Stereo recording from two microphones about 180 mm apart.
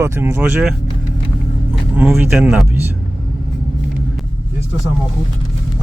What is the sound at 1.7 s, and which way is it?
Vehicle, centre (ahead or behind).